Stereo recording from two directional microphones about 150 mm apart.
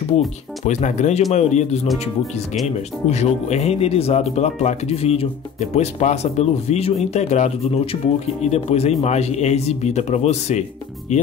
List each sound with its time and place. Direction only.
0.7 s speech: 55° left (ahead or behind)
3.1 s speech: 50° left (ahead or behind)